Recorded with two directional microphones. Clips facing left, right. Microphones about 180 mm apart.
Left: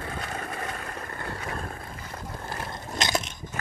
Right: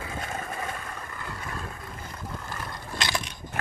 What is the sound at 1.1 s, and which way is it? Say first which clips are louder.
Vehicle: left 3 dB; 50° left (ahead or behind).